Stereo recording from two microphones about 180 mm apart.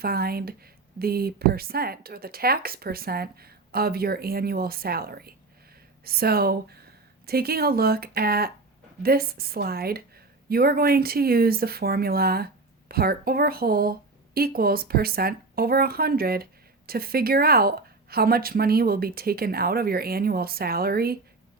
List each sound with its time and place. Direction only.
0.0 s speech: 55° right (ahead or behind)